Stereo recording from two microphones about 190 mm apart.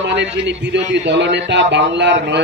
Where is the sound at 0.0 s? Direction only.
65° right (ahead or behind).